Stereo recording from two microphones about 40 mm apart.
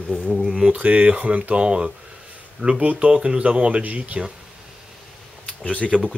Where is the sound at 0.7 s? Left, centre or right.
Right.